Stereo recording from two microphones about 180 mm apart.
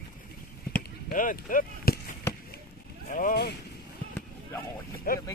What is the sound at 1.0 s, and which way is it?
Speech, 50° left (ahead or behind).